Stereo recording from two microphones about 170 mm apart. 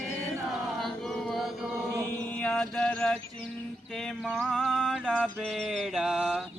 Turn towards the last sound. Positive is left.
turn(degrees=-5)  # may be behind; listen again after turning